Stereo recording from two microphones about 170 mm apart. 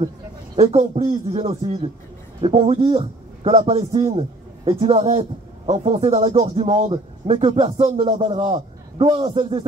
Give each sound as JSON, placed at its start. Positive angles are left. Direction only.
{"t": 0.6, "sound": "a man's voice", "side_deg": -35}